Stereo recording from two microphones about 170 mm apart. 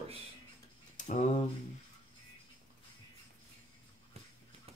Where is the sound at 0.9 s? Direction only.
45° left (ahead or behind).